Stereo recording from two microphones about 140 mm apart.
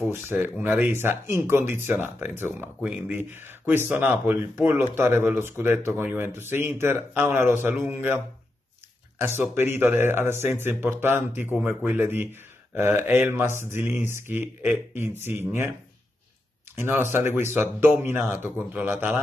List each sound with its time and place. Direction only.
0.1 s speech: 15° right (ahead or behind)
9.2 s speech: 15° right (ahead or behind)
16.7 s speech: 15° right (ahead or behind)